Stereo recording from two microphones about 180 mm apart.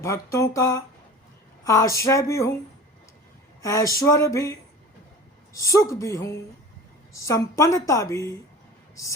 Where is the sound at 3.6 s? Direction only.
15° left (ahead or behind).